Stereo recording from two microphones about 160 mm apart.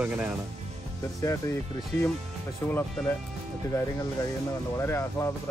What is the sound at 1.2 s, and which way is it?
Speech, 20° left (ahead or behind).